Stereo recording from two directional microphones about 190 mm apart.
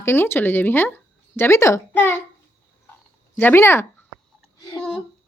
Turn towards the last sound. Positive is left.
turn(degrees=20)  # may be behind; listen again after turning